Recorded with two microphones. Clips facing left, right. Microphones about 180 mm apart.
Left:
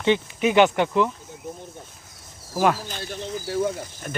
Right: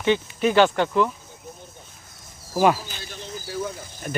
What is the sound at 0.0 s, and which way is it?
Speech, 20° left (ahead or behind).